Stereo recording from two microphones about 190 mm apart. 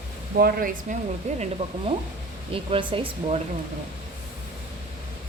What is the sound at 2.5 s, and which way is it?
Speech, 30° right (ahead or behind).